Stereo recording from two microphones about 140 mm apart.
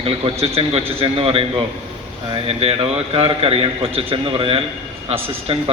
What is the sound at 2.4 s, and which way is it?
A man's voice, 45° right (ahead or behind).